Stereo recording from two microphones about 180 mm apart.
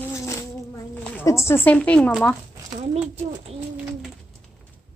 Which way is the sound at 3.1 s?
35° right (ahead or behind).